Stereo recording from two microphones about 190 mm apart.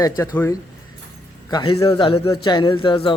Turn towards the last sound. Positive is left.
turn(degrees=25)  # may be behind; listen again after turning